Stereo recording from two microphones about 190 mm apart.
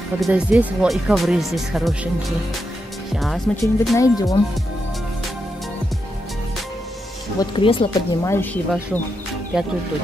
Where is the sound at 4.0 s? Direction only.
20° left (ahead or behind).